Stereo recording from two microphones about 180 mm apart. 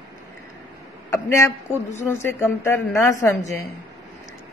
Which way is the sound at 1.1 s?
15° left (ahead or behind).